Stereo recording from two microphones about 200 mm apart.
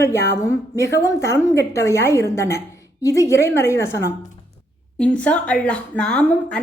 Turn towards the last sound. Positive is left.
turn(degrees=5)  # may be behind; listen again after turning